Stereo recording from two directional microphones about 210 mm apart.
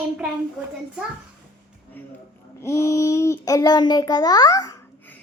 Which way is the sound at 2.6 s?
15° left (ahead or behind).